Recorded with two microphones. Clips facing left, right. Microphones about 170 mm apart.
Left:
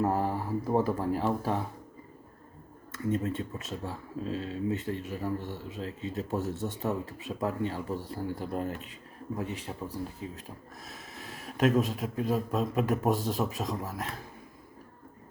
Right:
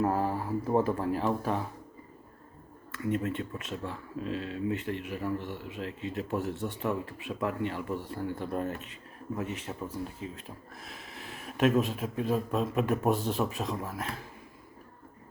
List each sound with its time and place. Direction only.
0.0 s speech: 40° left (ahead or behind)
3.0 s speech: 40° left (ahead or behind)
10.8 s a man's voice: 40° left (ahead or behind)